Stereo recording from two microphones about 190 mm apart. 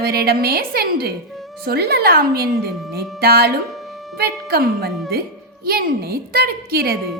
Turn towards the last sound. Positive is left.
turn(degrees=-55)  # may be behind; listen again after turning